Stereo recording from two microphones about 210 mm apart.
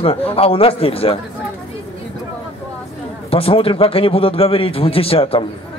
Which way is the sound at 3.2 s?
25° left (ahead or behind).